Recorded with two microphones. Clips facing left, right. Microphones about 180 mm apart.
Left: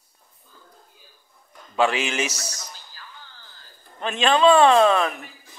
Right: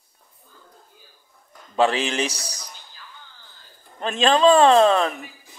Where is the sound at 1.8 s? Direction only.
35° right (ahead or behind).